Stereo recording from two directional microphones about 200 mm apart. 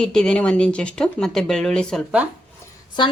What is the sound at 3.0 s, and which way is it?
Speech, 20° left (ahead or behind).